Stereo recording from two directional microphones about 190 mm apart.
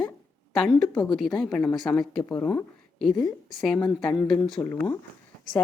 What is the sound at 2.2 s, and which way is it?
Speech, 15° left (ahead or behind).